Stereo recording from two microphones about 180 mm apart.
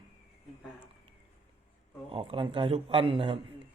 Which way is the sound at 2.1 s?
30° right (ahead or behind).